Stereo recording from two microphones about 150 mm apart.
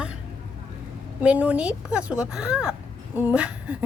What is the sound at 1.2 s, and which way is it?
A woman's voice, 10° right (ahead or behind).